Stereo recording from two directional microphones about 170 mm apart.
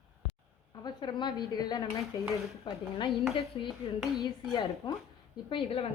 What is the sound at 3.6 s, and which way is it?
Speech, 25° left (ahead or behind).